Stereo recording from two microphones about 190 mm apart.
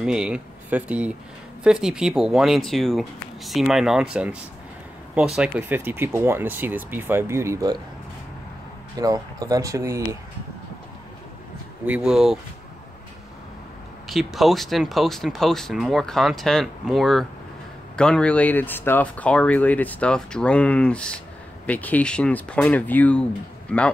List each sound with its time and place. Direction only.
0.0 s speech: 5° right (ahead or behind)
8.9 s speech: 20° right (ahead or behind)
11.8 s speech: 5° right (ahead or behind)
14.0 s speech: centre (ahead or behind)